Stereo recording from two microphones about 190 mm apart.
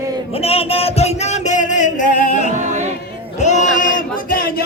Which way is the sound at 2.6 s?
40° right (ahead or behind).